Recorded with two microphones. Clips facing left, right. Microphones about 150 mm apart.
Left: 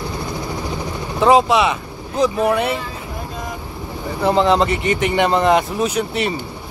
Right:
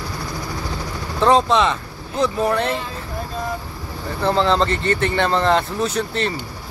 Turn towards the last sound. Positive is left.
turn(degrees=15)  # may be behind; listen again after turning